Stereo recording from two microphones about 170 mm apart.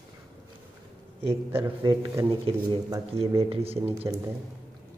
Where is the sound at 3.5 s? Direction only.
35° right (ahead or behind).